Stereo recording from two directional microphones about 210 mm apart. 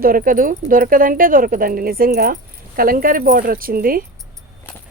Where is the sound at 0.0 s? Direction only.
45° right (ahead or behind).